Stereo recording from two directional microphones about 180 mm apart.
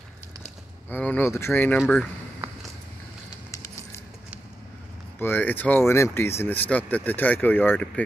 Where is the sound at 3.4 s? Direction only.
15° left (ahead or behind).